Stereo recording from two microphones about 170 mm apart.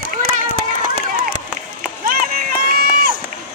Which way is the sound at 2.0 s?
60° right (ahead or behind).